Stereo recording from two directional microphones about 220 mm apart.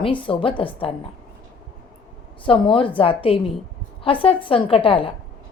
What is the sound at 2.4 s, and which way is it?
Speech, 25° left (ahead or behind).